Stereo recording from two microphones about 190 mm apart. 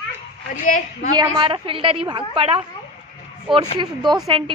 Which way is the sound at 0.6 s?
45° left (ahead or behind).